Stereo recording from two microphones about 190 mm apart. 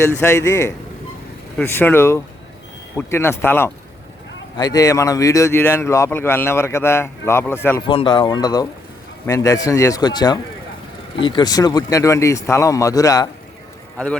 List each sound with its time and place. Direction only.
0.2 s a man's voice: 15° left (ahead or behind)
7.9 s a man's voice: 25° left (ahead or behind)